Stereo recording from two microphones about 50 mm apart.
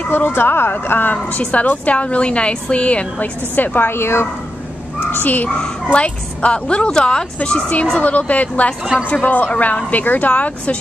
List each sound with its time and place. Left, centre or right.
0.1 s speech: left
1.1 s a woman's voice: left
5.0 s a child's voice: left
5.9 s a woman's voice: left